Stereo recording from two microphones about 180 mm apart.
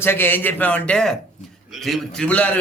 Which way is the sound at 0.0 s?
10° left (ahead or behind).